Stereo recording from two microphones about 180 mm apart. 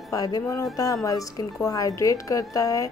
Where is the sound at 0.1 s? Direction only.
20° left (ahead or behind).